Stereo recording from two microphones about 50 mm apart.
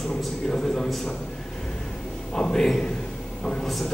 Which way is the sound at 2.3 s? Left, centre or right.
Centre.